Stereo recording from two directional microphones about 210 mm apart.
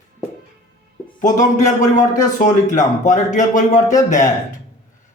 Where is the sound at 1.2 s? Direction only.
35° left (ahead or behind).